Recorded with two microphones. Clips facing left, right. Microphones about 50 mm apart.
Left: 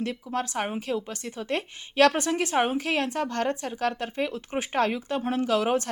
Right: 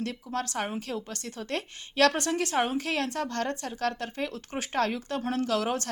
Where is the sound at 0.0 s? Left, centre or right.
Left.